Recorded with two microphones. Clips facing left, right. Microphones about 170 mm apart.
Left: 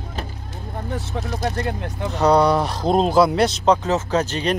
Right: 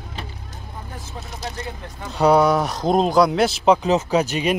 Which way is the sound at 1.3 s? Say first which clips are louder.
Left 7 dB; 60° left (ahead or behind).